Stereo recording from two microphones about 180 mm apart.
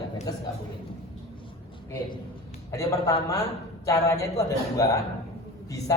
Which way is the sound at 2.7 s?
20° left (ahead or behind).